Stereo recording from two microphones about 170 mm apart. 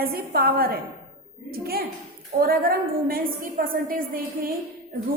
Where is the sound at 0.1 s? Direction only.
60° right (ahead or behind).